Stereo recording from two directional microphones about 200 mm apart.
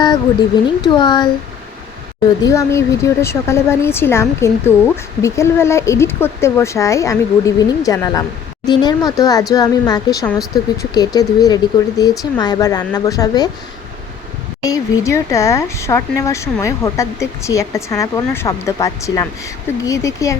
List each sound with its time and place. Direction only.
0.8 s speech: 20° left (ahead or behind)
2.4 s speech: 15° left (ahead or behind)
14.6 s speech: 15° left (ahead or behind)